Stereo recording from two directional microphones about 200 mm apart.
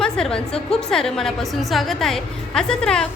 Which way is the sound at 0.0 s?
5° left (ahead or behind).